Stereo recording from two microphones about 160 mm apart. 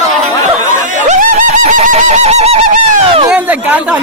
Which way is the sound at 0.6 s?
50° right (ahead or behind).